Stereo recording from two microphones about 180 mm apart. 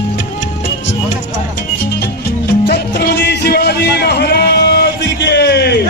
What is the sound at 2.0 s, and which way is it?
Music, 65° left (ahead or behind).